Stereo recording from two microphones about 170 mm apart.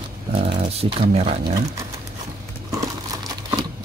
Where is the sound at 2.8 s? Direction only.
20° right (ahead or behind).